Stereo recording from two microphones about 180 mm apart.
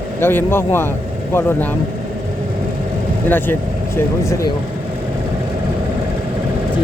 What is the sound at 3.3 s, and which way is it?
Speech, 10° left (ahead or behind).